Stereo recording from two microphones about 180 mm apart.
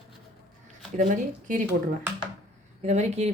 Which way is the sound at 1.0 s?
45° right (ahead or behind).